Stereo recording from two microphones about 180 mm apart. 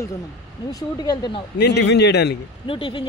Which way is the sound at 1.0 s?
25° left (ahead or behind).